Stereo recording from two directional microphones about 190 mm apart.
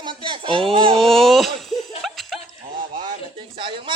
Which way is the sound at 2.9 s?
25° right (ahead or behind).